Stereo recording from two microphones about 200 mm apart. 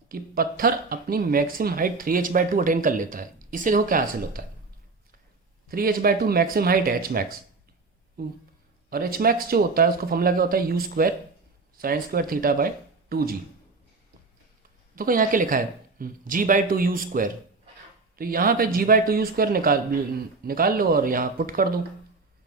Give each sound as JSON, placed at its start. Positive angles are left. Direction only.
{"t": 0.1, "sound": "speech", "side_deg": -45}
{"t": 5.6, "sound": "speech", "side_deg": -45}
{"t": 14.9, "sound": "speech", "side_deg": -45}